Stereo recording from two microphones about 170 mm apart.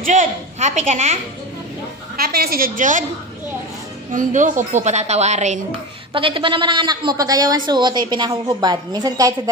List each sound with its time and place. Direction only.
0.0 s a woman's voice: 50° right (ahead or behind)
2.1 s a woman's voice: 65° right (ahead or behind)
4.1 s a woman's voice: 50° right (ahead or behind)
6.1 s a woman's voice: 30° right (ahead or behind)